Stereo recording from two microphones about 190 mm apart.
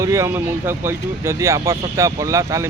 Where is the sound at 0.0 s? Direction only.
15° right (ahead or behind).